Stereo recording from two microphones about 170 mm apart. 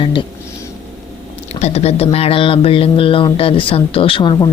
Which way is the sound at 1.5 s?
40° left (ahead or behind).